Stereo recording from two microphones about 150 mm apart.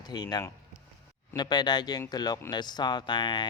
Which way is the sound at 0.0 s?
25° left (ahead or behind).